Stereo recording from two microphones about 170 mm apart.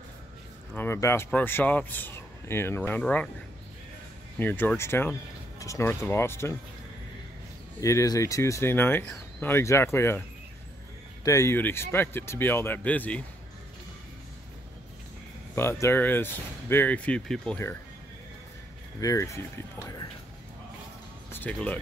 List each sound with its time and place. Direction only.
0.7 s speech: 15° left (ahead or behind)
4.4 s speech: 10° left (ahead or behind)
7.8 s speech: 20° left (ahead or behind)
11.2 s speech: 15° left (ahead or behind)
15.5 s speech: 15° left (ahead or behind)
18.9 s speech: 20° left (ahead or behind)
21.3 s speech: 10° left (ahead or behind)